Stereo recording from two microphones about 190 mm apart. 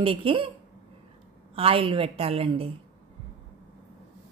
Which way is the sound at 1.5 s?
30° right (ahead or behind).